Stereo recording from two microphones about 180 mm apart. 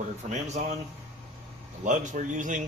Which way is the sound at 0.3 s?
40° right (ahead or behind).